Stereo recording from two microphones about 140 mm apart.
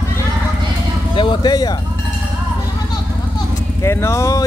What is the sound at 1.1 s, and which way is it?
Speech, 35° left (ahead or behind).